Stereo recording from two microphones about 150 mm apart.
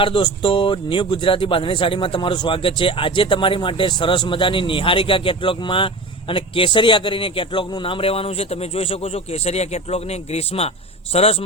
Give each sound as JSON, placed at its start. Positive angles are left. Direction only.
{"t": 0.0, "sound": "speech", "side_deg": 35}